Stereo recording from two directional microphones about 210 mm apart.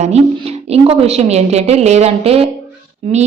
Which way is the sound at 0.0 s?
30° right (ahead or behind).